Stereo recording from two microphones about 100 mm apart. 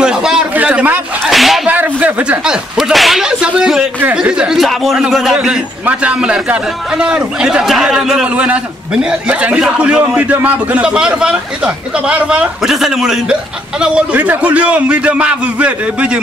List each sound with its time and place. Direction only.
0.0 s a sound: 5° right (ahead or behind)
1.2 s whip: centre (ahead or behind)
1.7 s a man's voice: 15° right (ahead or behind)